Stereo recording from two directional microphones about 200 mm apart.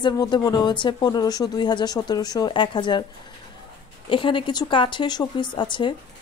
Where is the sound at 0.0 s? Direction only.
20° left (ahead or behind).